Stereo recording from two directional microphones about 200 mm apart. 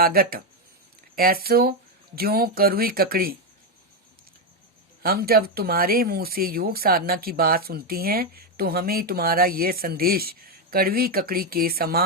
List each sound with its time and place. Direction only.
0.0 s speech: 50° right (ahead or behind)
5.0 s speech: 50° right (ahead or behind)